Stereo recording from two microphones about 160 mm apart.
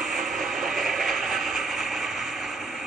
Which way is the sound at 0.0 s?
Centre (ahead or behind).